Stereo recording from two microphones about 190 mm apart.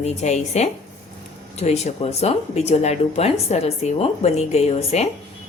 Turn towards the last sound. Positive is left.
turn(degrees=35)  # may be behind; listen again after turning